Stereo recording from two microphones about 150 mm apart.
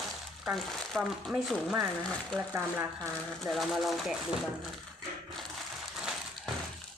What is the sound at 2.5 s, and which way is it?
Speech, 20° right (ahead or behind).